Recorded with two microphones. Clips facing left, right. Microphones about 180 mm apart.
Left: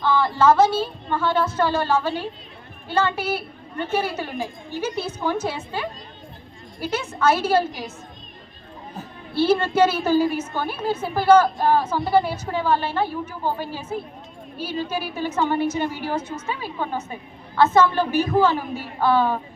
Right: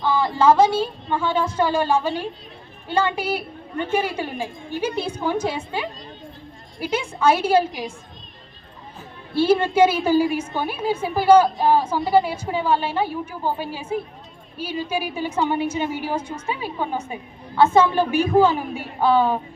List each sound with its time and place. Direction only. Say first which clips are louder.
0.0 s a woman's voice: even; 10° right (ahead or behind)
9.3 s a woman's voice: right 1 dB; 15° right (ahead or behind)